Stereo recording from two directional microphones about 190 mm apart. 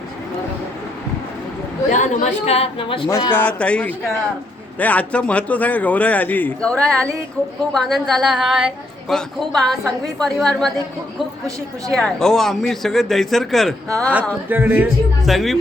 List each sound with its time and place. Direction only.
1.9 s a woman's voice: 40° left (ahead or behind)
3.3 s a man's voice: 5° left (ahead or behind)
11.9 s a woman's voice: 5° left (ahead or behind)